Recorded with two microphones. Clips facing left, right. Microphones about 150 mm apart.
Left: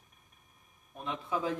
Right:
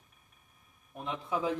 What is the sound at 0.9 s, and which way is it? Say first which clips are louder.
Speech: right 1 dB; 15° right (ahead or behind).